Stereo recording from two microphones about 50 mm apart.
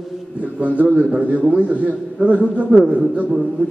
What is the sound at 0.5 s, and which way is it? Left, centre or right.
A man's voice, right.